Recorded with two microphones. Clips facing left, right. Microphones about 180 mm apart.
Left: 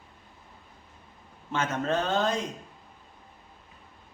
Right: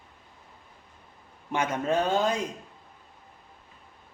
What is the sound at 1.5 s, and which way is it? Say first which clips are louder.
Speech: right 1 dB; 15° right (ahead or behind).